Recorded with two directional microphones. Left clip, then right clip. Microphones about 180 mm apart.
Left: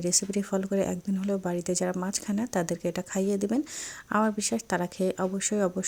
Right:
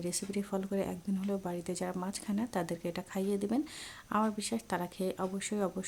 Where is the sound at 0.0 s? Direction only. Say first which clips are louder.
Left 9 dB; 25° left (ahead or behind).